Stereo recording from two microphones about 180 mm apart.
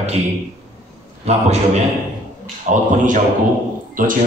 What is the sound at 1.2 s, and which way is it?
A man's voice, 40° right (ahead or behind).